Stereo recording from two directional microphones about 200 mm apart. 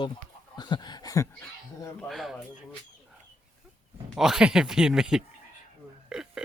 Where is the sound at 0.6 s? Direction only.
20° left (ahead or behind).